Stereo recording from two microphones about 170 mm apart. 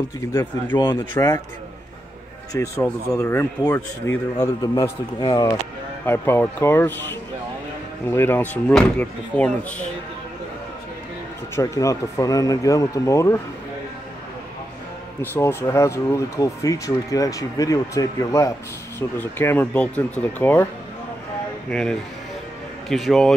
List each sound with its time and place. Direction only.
0.3 s speech: 15° left (ahead or behind)
2.5 s speech: 15° left (ahead or behind)
11.5 s speech: 20° left (ahead or behind)
15.3 s speech: 15° left (ahead or behind)
21.6 s a man's voice: 5° left (ahead or behind)